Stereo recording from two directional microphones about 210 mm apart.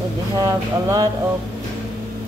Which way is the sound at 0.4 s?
15° right (ahead or behind).